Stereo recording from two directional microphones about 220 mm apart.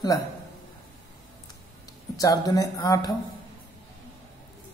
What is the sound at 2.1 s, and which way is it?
Speech, 15° left (ahead or behind).